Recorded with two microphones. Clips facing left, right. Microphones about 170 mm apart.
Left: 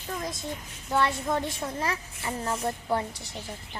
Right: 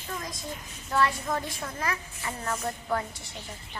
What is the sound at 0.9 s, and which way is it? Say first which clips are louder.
A woman's voice: left 1 dB; 25° left (ahead or behind).